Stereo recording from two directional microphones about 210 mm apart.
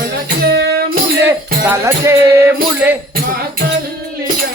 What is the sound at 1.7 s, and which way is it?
Music, 10° right (ahead or behind).